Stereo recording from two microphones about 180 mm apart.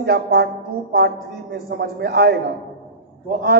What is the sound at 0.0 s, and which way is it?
A woman's voice, 60° right (ahead or behind).